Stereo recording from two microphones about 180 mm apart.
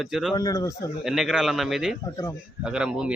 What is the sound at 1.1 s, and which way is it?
A man's voice, 5° right (ahead or behind).